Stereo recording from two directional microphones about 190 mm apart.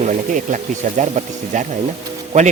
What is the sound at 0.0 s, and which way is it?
A man's voice, 40° right (ahead or behind).